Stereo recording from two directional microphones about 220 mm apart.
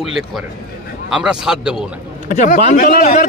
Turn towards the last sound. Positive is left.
turn(degrees=35)  # may be behind; listen again after turning